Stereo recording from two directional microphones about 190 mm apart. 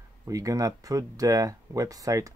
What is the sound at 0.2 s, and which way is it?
Speech, 15° right (ahead or behind).